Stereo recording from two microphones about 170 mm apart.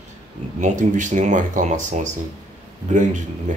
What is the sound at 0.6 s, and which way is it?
Speech, 45° right (ahead or behind).